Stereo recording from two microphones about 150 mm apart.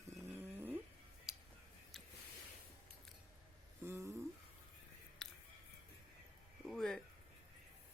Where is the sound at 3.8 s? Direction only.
20° right (ahead or behind).